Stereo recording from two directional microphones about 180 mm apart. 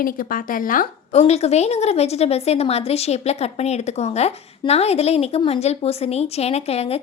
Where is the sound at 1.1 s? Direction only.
35° left (ahead or behind).